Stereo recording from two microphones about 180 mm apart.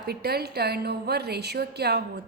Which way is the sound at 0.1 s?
60° right (ahead or behind).